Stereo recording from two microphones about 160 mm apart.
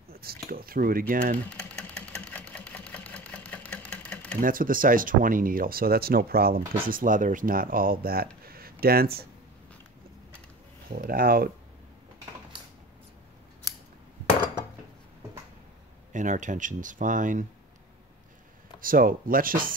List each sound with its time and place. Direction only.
0.1 s speech: 70° right (ahead or behind)
2.1 s sewing machine: 10° left (ahead or behind)
4.4 s speech: 60° right (ahead or behind)
6.9 s speech: 60° right (ahead or behind)
8.5 s a sound: 70° right (ahead or behind)
10.9 s speech: 65° right (ahead or behind)
16.1 s speech: 50° right (ahead or behind)
18.8 s speech: 60° right (ahead or behind)